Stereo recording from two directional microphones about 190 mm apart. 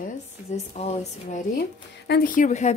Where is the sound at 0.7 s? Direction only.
35° left (ahead or behind).